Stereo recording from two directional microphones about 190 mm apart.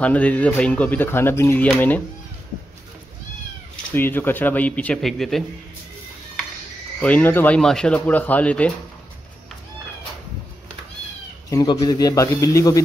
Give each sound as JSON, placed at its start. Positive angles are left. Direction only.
{"t": 0.0, "sound": "speech", "side_deg": 5}
{"t": 3.9, "sound": "speech", "side_deg": 10}
{"t": 7.0, "sound": "speech", "side_deg": 5}
{"t": 11.5, "sound": "a man's voice", "side_deg": 20}